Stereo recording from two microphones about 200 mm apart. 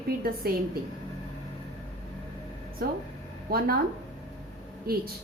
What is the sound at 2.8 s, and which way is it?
Speech, 50° right (ahead or behind).